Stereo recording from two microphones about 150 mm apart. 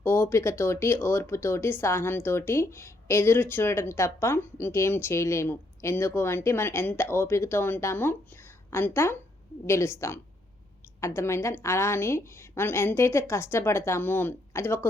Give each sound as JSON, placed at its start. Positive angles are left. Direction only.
{"t": 0.0, "sound": "speech", "side_deg": 15}